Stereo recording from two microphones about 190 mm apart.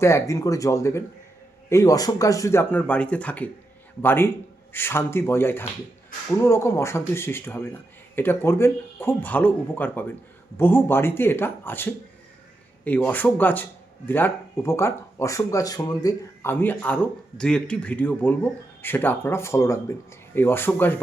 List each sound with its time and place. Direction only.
0.0 s speech: 15° left (ahead or behind)